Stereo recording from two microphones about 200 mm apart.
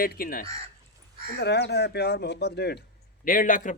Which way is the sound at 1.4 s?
60° left (ahead or behind).